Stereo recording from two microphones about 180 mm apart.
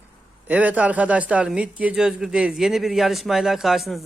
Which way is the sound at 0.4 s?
10° right (ahead or behind).